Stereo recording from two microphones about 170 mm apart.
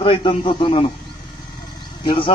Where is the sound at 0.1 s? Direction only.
30° left (ahead or behind).